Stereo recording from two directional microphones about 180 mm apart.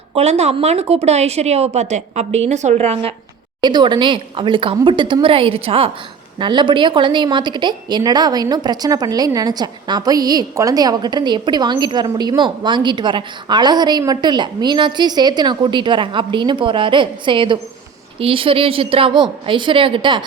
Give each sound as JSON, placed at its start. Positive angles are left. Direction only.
{"t": 0.1, "sound": "a woman's voice", "side_deg": -35}